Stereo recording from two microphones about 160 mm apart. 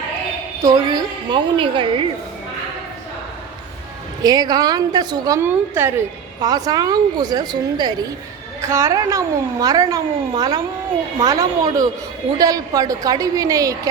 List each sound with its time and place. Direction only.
0.6 s a woman's voice: 25° right (ahead or behind)
4.2 s a woman's voice: 25° right (ahead or behind)
6.4 s a woman's voice: 25° right (ahead or behind)